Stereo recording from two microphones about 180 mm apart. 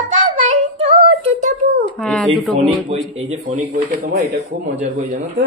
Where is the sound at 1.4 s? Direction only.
45° right (ahead or behind).